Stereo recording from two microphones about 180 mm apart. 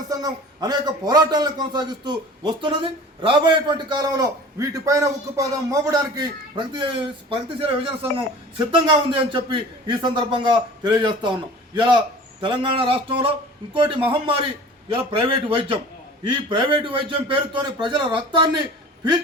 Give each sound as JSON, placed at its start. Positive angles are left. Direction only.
{"t": 0.1, "sound": "a man's voice", "side_deg": -20}